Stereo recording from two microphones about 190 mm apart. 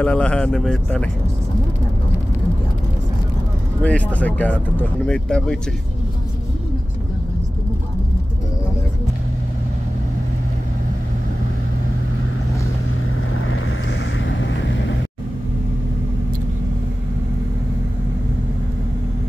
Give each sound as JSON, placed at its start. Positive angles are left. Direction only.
{"t": 0.0, "sound": "speech", "side_deg": 5}
{"t": 3.8, "sound": "speech", "side_deg": 5}
{"t": 13.3, "sound": "vehicle", "side_deg": 90}